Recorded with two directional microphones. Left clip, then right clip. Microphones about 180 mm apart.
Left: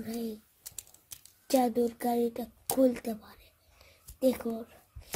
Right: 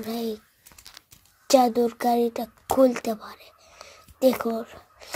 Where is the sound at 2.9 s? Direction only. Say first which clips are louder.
Right 9 dB; 10° right (ahead or behind).